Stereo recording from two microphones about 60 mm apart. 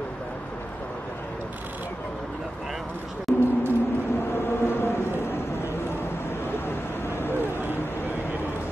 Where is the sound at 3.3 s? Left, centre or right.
Left.